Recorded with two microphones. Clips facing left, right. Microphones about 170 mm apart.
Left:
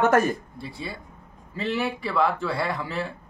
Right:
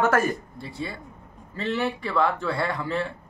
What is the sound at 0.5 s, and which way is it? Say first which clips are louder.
Speech: right 1 dB; centre (ahead or behind).